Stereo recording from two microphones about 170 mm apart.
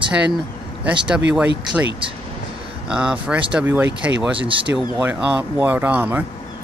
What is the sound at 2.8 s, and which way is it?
Speech, 5° right (ahead or behind).